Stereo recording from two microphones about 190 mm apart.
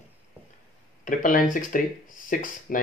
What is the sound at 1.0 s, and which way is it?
Speech, 45° left (ahead or behind).